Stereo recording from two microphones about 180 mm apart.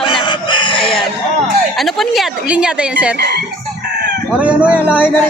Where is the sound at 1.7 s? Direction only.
Centre (ahead or behind).